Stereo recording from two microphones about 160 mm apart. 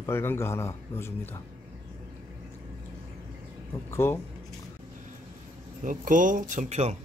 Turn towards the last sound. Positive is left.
turn(degrees=-45)  # may be behind; listen again after turning